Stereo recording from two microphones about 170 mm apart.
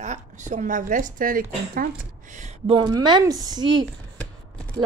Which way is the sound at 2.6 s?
25° right (ahead or behind).